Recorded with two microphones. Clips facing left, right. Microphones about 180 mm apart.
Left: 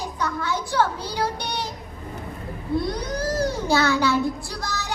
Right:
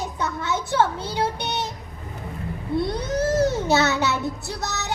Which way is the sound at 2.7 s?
25° right (ahead or behind).